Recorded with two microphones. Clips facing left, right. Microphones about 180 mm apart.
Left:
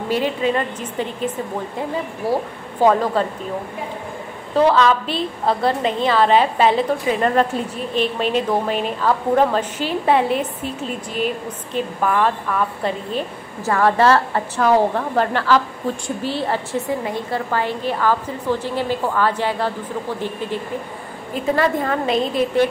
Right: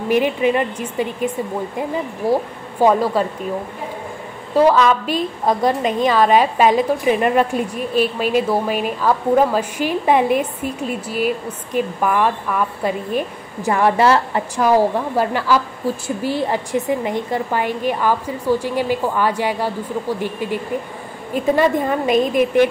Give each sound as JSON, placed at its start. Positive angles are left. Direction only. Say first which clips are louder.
{"t": 0.1, "sound": "a woman's voice", "louder": "right 3 dB", "side_deg": -15}
{"t": 4.6, "sound": "a woman's voice", "louder": "right 1 dB", "side_deg": -10}